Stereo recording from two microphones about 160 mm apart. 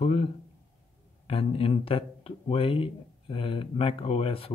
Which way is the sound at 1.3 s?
35° left (ahead or behind).